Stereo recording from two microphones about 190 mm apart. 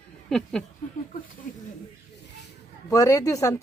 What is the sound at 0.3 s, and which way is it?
Speech, 5° left (ahead or behind).